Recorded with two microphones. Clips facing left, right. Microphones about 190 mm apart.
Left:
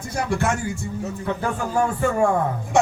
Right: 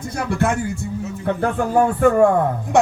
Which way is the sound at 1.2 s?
60° right (ahead or behind).